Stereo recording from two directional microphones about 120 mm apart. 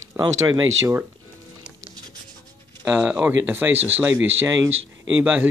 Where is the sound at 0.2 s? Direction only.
30° right (ahead or behind).